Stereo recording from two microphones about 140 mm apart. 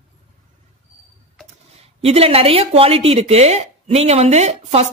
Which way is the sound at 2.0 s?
45° right (ahead or behind).